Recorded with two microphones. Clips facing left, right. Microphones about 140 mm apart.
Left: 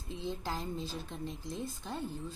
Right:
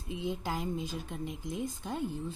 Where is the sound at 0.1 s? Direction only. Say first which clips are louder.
Right 3 dB; 15° right (ahead or behind).